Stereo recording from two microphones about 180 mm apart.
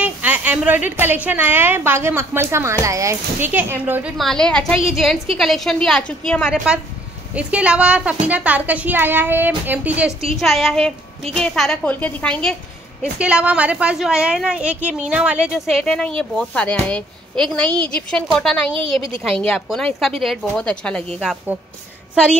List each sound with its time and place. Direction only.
0.0 s a woman's voice: 10° right (ahead or behind)
4.2 s a woman's voice: 5° left (ahead or behind)
13.0 s a woman's voice: 5° right (ahead or behind)
18.8 s a woman's voice: 30° right (ahead or behind)
19.4 s a woman's voice: 5° left (ahead or behind)